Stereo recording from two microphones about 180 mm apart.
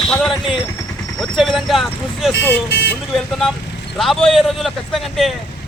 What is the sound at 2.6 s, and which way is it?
Speech, 70° left (ahead or behind).